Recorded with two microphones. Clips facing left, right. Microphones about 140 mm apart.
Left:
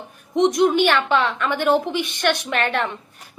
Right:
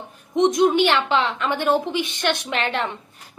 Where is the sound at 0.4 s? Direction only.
20° right (ahead or behind).